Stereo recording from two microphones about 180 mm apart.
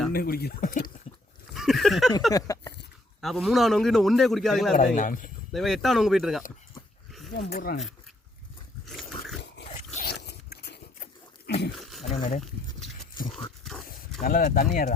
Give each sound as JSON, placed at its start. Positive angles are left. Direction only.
{"t": 0.1, "sound": "speech", "side_deg": 55}
{"t": 1.1, "sound": "a sound", "side_deg": 40}
{"t": 1.5, "sound": "a sound", "side_deg": 0}
{"t": 2.3, "sound": "speech", "side_deg": 20}
{"t": 3.2, "sound": "a man's voice", "side_deg": 0}
{"t": 4.9, "sound": "speech", "side_deg": 45}
{"t": 5.5, "sound": "a man's voice", "side_deg": 0}
{"t": 7.3, "sound": "speech", "side_deg": 55}
{"t": 8.9, "sound": "dog", "side_deg": 0}
{"t": 9.6, "sound": "a sound", "side_deg": 40}
{"t": 10.1, "sound": "biting", "side_deg": 65}
{"t": 11.8, "sound": "a sound", "side_deg": 0}
{"t": 12.0, "sound": "speech", "side_deg": 35}
{"t": 14.2, "sound": "speech", "side_deg": 50}